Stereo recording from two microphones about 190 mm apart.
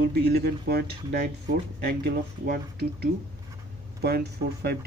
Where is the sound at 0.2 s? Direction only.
55° right (ahead or behind).